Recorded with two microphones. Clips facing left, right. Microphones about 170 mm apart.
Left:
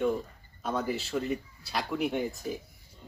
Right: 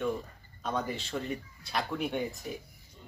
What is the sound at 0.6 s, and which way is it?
Speech, 5° left (ahead or behind).